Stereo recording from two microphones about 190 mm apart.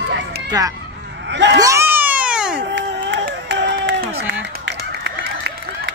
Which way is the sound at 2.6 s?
70° right (ahead or behind).